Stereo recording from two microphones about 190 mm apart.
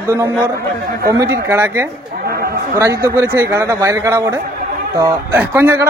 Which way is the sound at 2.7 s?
15° right (ahead or behind).